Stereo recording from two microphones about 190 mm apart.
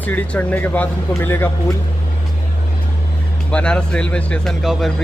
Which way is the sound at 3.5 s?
5° left (ahead or behind).